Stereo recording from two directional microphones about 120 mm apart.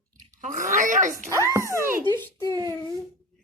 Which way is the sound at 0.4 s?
90° right.